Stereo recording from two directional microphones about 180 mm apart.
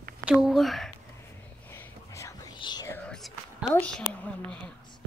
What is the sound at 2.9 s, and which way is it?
Whispering, centre (ahead or behind).